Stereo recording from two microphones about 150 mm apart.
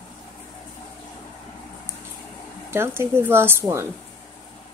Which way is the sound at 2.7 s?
15° right (ahead or behind).